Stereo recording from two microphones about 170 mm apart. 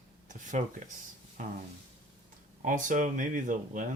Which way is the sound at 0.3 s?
45° right (ahead or behind).